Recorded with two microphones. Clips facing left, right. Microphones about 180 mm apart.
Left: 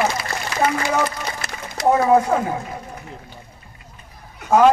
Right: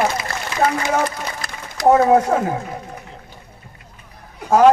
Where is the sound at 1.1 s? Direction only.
25° left (ahead or behind).